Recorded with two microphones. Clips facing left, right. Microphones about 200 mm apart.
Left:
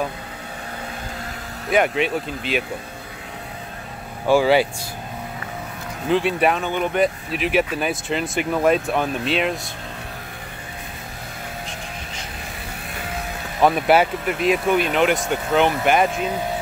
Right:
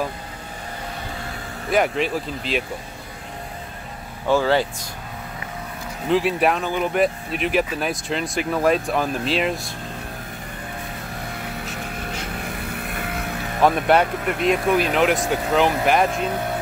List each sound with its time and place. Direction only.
1.7 s speech: centre (ahead or behind)
4.3 s speech: 10° left (ahead or behind)
6.0 s speech: centre (ahead or behind)
12.4 s vehicle: 60° right (ahead or behind)
13.6 s speech: centre (ahead or behind)